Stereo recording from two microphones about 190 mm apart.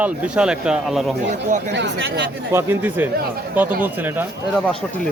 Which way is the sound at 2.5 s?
10° right (ahead or behind).